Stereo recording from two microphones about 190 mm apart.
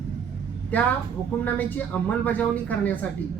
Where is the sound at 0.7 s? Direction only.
5° left (ahead or behind).